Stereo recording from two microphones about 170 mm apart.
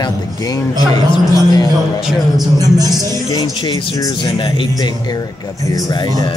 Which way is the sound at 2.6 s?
20° right (ahead or behind).